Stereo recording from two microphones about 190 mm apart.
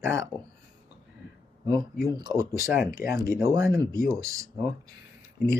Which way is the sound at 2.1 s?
20° right (ahead or behind).